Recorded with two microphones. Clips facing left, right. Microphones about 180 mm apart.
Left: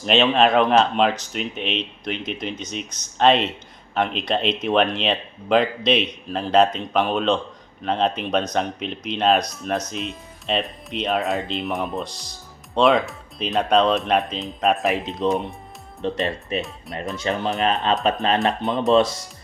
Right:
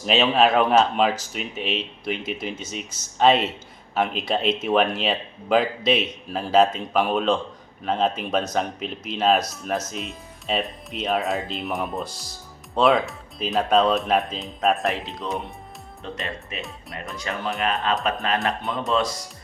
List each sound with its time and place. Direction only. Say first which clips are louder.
0.0 s speech: left 1 dB; 5° right (ahead or behind)
15.0 s speech: left 7 dB; 20° left (ahead or behind)